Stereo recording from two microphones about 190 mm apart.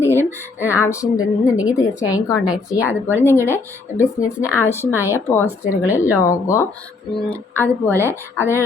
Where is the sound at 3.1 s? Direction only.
10° right (ahead or behind).